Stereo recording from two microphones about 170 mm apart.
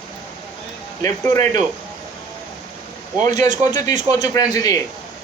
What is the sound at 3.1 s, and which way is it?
Speech, 50° right (ahead or behind).